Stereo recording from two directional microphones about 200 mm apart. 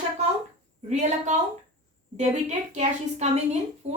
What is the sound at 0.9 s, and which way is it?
A woman's voice, 35° right (ahead or behind).